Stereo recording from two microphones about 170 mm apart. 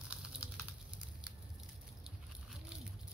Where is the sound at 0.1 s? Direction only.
5° right (ahead or behind).